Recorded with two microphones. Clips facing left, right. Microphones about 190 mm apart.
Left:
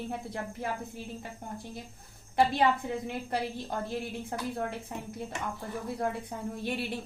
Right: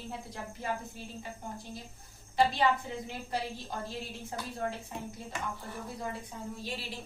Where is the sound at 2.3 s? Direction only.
55° left (ahead or behind).